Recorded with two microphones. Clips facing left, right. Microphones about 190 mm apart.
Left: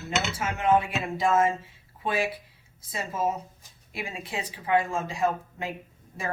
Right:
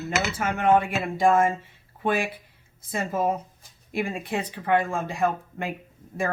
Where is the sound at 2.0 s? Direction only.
50° right (ahead or behind).